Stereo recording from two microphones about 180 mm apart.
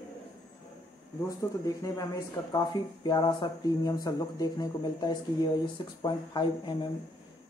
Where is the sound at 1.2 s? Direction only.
20° left (ahead or behind).